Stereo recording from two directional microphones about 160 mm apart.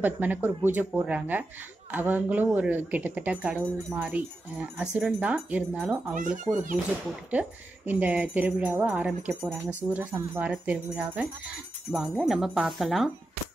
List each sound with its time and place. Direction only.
0.0 s speech: 10° right (ahead or behind)
6.1 s speech: 55° right (ahead or behind)
7.2 s speech: 10° right (ahead or behind)